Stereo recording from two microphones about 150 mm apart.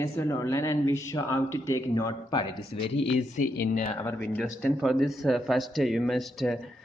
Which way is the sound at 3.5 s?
80° left.